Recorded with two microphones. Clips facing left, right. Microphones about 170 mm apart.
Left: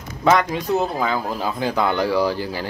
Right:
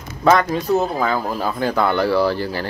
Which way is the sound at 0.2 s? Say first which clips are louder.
Right 2 dB; 15° left (ahead or behind).